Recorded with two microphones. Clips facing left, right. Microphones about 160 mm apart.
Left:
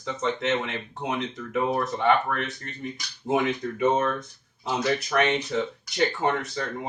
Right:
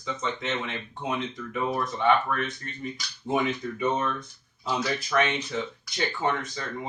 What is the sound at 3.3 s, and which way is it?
Speech, 75° left (ahead or behind).